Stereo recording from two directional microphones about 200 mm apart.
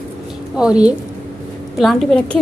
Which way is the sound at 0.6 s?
5° right (ahead or behind).